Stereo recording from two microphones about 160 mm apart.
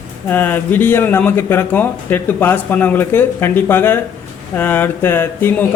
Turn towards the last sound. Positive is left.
turn(degrees=15)  # may be behind; listen again after turning